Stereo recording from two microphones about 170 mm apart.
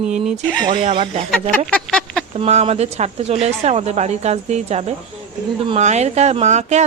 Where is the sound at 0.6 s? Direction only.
30° right (ahead or behind).